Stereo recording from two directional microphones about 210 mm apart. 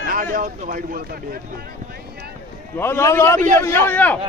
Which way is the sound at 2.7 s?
10° left (ahead or behind).